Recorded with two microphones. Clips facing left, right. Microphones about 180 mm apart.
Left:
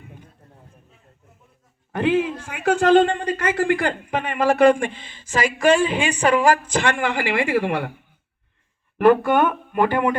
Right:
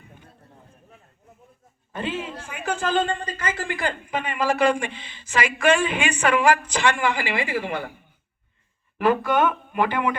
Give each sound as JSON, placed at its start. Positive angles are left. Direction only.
{"t": 1.9, "sound": "a man's voice", "side_deg": 70}
{"t": 9.0, "sound": "speech", "side_deg": 55}